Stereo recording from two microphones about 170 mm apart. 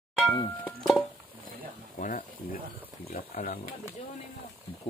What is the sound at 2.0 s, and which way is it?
Speech, 50° left (ahead or behind).